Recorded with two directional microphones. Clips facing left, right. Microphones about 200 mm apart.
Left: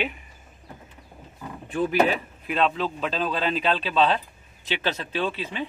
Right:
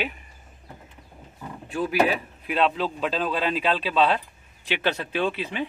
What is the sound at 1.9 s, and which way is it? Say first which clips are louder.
Speech: right 1 dB; 10° right (ahead or behind).